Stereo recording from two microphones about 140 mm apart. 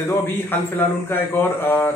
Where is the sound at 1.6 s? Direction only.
15° left (ahead or behind).